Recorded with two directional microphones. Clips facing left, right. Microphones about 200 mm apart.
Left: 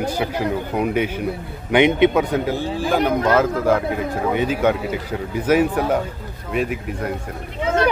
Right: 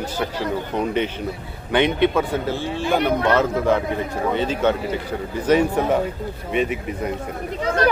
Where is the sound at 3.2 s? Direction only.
5° left (ahead or behind).